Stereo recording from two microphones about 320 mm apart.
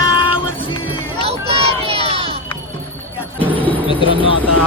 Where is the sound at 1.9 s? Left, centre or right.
Centre.